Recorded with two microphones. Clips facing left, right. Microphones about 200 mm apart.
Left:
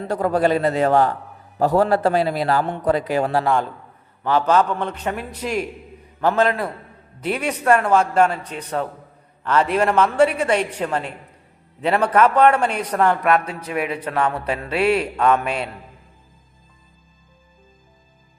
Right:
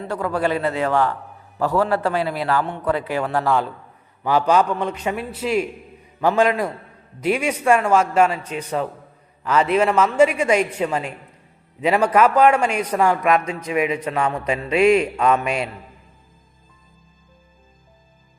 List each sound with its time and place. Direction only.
0.1 s a man's voice: 40° left (ahead or behind)
3.4 s a man's voice: centre (ahead or behind)